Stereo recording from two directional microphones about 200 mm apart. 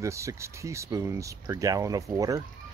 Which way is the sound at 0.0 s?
15° right (ahead or behind).